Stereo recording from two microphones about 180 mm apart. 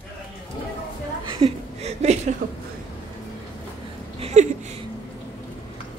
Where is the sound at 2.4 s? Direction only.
50° right (ahead or behind).